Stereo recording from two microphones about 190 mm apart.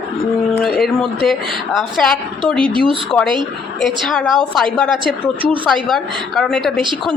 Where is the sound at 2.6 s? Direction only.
25° right (ahead or behind).